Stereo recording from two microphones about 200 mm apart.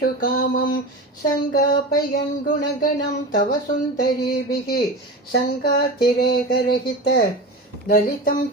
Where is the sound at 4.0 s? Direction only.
50° left (ahead or behind).